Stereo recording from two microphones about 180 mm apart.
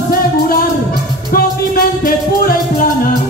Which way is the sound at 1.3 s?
55° left (ahead or behind).